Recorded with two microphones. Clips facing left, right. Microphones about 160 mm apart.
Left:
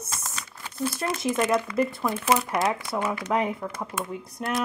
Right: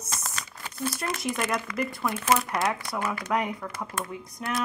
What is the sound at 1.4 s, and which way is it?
Speech, 25° left (ahead or behind).